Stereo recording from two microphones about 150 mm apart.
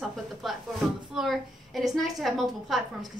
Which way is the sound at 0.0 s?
Centre (ahead or behind).